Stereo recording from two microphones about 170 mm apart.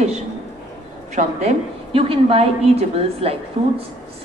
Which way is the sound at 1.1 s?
45° right (ahead or behind).